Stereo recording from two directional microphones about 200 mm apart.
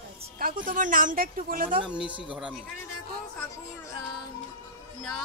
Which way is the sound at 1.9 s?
5° right (ahead or behind).